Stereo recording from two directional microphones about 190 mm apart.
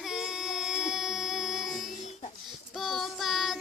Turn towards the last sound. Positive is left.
turn(degrees=0)  # may be behind; listen again after turning